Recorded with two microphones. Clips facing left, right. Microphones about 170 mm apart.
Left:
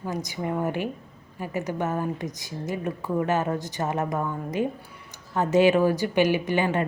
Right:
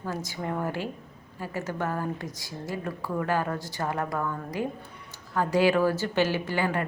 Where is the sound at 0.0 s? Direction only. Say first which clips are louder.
Left 3 dB; 15° left (ahead or behind).